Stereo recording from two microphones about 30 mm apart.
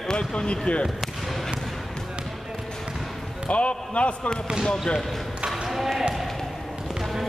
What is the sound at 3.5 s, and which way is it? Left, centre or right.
Speech, left.